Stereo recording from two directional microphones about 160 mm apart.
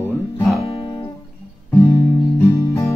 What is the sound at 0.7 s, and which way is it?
Music, 25° left (ahead or behind).